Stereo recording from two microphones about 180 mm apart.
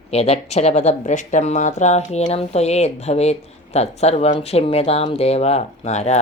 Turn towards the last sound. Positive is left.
turn(degrees=40)  # may be behind; listen again after turning